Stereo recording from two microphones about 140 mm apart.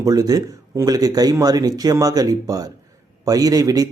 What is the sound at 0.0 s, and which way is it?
Speech, 25° right (ahead or behind).